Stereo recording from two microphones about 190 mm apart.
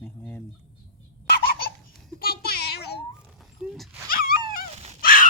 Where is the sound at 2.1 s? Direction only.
50° left (ahead or behind).